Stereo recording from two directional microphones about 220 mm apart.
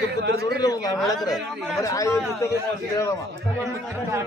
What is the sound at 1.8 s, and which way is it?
Speech, 15° left (ahead or behind).